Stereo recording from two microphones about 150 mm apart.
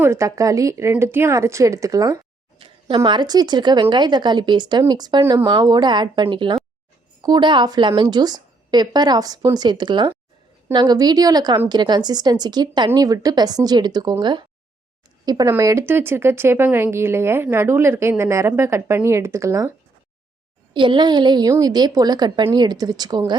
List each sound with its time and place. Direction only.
0.0 s a woman's voice: 20° right (ahead or behind)
20.7 s speech: 35° right (ahead or behind)